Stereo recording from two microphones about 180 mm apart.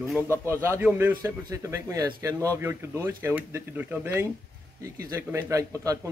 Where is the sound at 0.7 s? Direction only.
10° right (ahead or behind).